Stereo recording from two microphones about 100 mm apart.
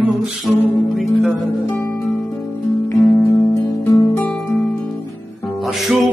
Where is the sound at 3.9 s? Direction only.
30° left (ahead or behind).